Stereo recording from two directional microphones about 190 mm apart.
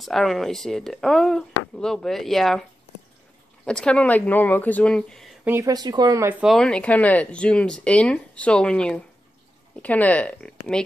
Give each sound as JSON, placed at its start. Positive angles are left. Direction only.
{"t": 0.0, "sound": "speech", "side_deg": 0}
{"t": 3.6, "sound": "speech", "side_deg": 5}
{"t": 5.4, "sound": "speech", "side_deg": -15}
{"t": 6.4, "sound": "speech", "side_deg": 0}